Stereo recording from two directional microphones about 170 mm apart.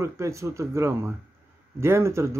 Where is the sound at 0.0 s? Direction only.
20° right (ahead or behind).